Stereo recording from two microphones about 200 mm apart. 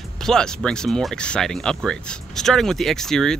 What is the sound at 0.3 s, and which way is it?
Speech, 5° left (ahead or behind).